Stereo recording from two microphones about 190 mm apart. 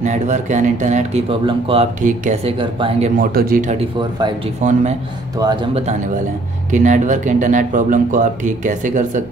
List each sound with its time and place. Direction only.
0.0 s speech: 40° right (ahead or behind)
2.6 s speech: 25° right (ahead or behind)
3.2 s speech: 50° right (ahead or behind)
5.4 s speech: 20° right (ahead or behind)
6.7 s speech: 40° right (ahead or behind)